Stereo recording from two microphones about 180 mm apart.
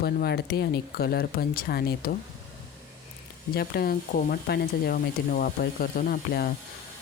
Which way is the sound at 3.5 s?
60° left (ahead or behind).